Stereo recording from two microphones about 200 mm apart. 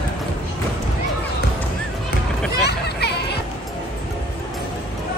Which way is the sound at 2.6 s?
55° left (ahead or behind).